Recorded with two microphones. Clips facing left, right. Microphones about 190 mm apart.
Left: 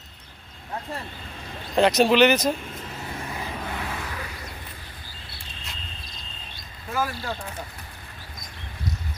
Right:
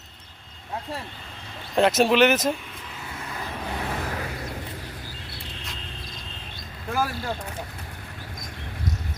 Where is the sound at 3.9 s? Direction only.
40° right (ahead or behind).